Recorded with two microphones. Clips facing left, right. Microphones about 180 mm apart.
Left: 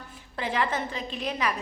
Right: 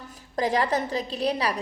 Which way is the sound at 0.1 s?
40° right (ahead or behind).